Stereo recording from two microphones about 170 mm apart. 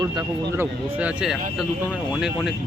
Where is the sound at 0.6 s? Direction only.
10° right (ahead or behind).